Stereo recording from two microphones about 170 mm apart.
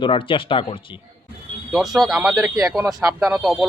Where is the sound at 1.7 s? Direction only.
Centre (ahead or behind).